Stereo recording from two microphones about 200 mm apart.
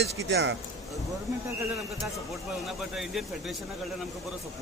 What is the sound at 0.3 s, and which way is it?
Speech, 60° right (ahead or behind).